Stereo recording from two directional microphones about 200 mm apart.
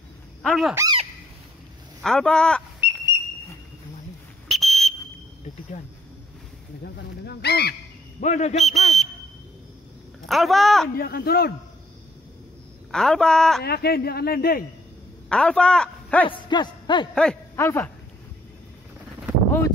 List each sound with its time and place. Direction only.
0.4 s speech: centre (ahead or behind)
0.7 s goose: 20° right (ahead or behind)
2.0 s speech: 5° left (ahead or behind)
4.5 s whistle: centre (ahead or behind)
6.8 s speech: 55° left (ahead or behind)
8.2 s a man's voice: 35° left (ahead or behind)
8.5 s speech: centre (ahead or behind)
10.2 s speech: centre (ahead or behind)
11.0 s speech: 50° left (ahead or behind)
12.9 s speech: 5° left (ahead or behind)
13.6 s speech: 55° left (ahead or behind)
15.2 s a man's voice: 5° left (ahead or behind)
16.3 s music: 20° left (ahead or behind)
17.1 s speech: 5° left (ahead or behind)